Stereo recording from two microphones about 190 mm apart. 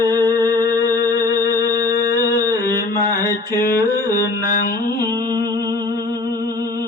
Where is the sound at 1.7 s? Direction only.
20° right (ahead or behind).